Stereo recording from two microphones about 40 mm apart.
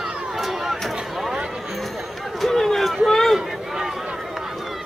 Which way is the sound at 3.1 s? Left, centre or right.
Centre.